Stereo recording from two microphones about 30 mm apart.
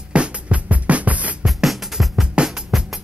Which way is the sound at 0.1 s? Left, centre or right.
Right.